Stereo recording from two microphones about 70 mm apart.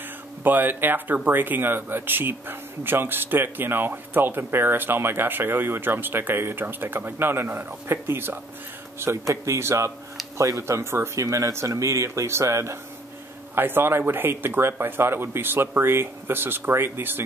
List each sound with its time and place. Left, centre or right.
0.4 s speech: right
10.8 s speech: right
13.6 s speech: right